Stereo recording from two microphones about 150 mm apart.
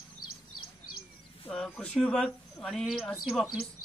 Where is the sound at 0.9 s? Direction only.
75° left (ahead or behind).